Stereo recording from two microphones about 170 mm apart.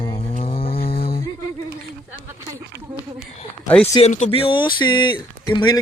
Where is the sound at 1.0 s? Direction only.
65° left (ahead or behind).